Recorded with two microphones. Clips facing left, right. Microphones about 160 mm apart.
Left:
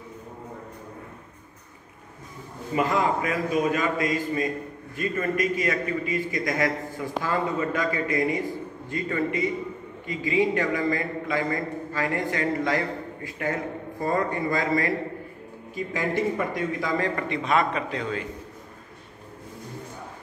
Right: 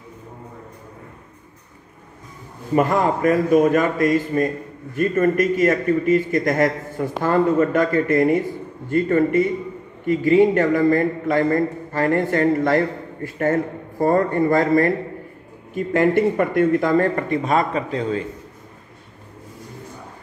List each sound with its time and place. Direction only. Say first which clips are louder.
2.7 s a man's voice: right 6 dB; 50° right (ahead or behind); by 18.2 s 30° right (ahead or behind)